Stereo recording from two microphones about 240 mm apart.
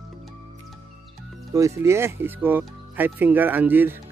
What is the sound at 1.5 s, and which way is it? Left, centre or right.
Speech, centre.